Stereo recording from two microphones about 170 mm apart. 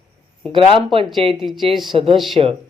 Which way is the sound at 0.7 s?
30° right (ahead or behind).